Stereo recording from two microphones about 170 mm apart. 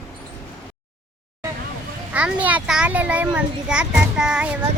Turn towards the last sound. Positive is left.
turn(degrees=-5)  # may be behind; listen again after turning